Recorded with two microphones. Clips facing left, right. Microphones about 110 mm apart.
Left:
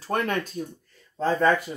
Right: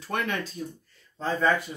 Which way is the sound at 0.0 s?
40° left (ahead or behind).